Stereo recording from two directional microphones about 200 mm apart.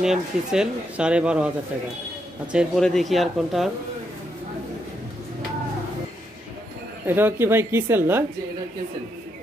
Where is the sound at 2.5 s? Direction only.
Centre (ahead or behind).